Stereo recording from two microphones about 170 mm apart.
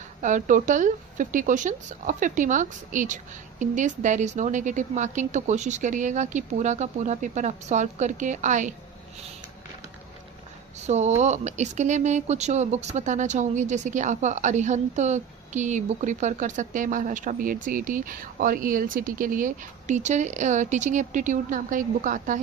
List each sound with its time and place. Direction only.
0.2 s speech: 45° right (ahead or behind)
10.8 s speech: 40° right (ahead or behind)